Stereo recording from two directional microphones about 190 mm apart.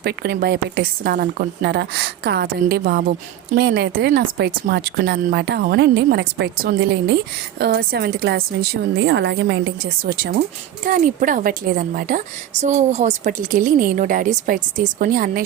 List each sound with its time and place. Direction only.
0.0 s a woman's voice: 55° right (ahead or behind)